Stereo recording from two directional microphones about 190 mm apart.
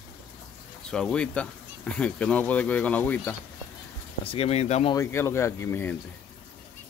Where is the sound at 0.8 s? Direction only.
5° left (ahead or behind).